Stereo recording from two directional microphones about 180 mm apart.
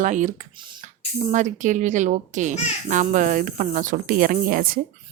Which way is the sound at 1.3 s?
45° right (ahead or behind).